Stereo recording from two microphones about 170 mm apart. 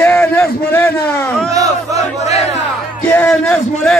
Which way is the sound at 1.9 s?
40° left (ahead or behind).